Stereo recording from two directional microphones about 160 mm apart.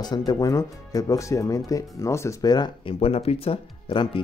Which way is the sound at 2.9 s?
40° left (ahead or behind).